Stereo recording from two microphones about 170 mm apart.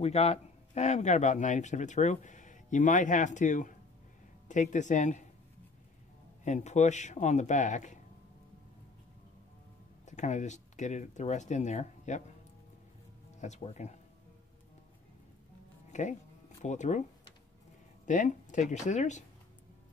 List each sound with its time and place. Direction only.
0.0 s speech: 40° left (ahead or behind)
6.4 s speech: 45° left (ahead or behind)
10.0 s speech: 45° left (ahead or behind)
13.4 s speech: 45° left (ahead or behind)
15.9 s speech: 45° left (ahead or behind)
18.0 s speech: 45° left (ahead or behind)